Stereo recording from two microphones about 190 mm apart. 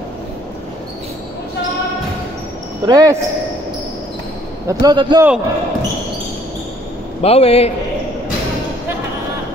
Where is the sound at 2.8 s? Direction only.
20° right (ahead or behind).